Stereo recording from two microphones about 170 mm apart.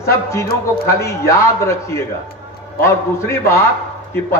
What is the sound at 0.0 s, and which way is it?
A man's voice, 15° left (ahead or behind).